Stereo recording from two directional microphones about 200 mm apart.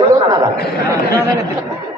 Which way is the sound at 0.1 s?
15° right (ahead or behind).